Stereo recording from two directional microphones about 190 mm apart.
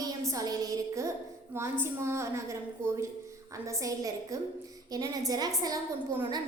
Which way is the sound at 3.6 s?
15° right (ahead or behind).